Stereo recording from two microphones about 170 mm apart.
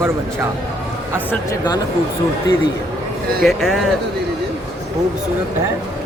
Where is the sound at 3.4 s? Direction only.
Centre (ahead or behind).